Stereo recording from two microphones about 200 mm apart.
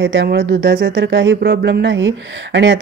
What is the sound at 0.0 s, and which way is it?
Speech, 60° right (ahead or behind).